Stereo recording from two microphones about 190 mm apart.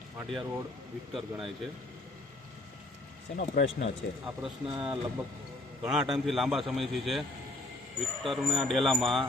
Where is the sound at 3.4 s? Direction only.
60° left (ahead or behind).